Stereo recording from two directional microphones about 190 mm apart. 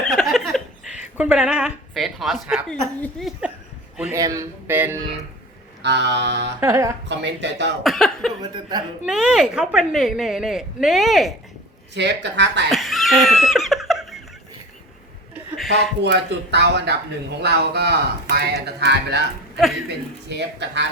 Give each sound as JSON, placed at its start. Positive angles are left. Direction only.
{"t": 0.0, "sound": "a sound", "side_deg": 0}
{"t": 1.1, "sound": "a woman's voice", "side_deg": -5}
{"t": 4.1, "sound": "speech", "side_deg": -15}
{"t": 5.8, "sound": "speech", "side_deg": -65}
{"t": 6.6, "sound": "speech", "side_deg": -15}
{"t": 7.1, "sound": "speech", "side_deg": -70}
{"t": 7.9, "sound": "a woman's voice", "side_deg": 0}
{"t": 11.9, "sound": "speech", "side_deg": -70}
{"t": 12.7, "sound": "giggle", "side_deg": 0}
{"t": 15.5, "sound": "a sound", "side_deg": 0}
{"t": 16.0, "sound": "speech", "side_deg": -60}
{"t": 19.5, "sound": "speech", "side_deg": 0}
{"t": 20.3, "sound": "speech", "side_deg": -65}